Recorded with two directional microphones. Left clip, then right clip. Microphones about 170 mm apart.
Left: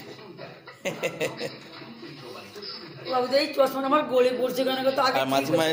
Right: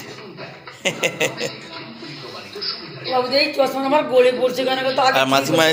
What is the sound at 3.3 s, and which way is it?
A man's voice, 55° left (ahead or behind).